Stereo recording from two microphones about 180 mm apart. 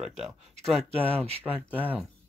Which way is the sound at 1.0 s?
35° right (ahead or behind).